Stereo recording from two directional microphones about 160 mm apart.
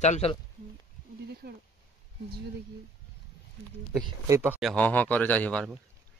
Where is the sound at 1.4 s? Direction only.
75° right (ahead or behind).